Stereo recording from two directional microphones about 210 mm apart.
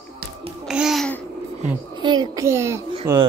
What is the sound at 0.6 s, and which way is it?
Babbling, centre (ahead or behind).